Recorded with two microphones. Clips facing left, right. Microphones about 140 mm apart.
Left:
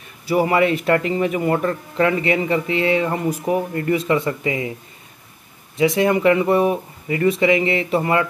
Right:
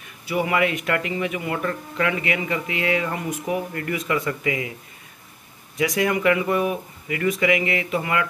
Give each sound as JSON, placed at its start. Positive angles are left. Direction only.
{"t": 0.3, "sound": "speech", "side_deg": 35}
{"t": 5.8, "sound": "speech", "side_deg": 25}